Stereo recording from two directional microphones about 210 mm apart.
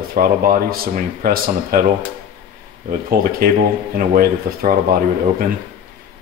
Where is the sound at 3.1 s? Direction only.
45° right (ahead or behind).